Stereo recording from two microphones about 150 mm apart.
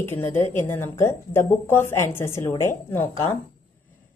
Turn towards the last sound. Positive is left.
turn(degrees=15)  # may be behind; listen again after turning